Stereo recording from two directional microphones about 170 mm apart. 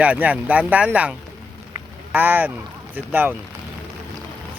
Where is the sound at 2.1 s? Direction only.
10° right (ahead or behind).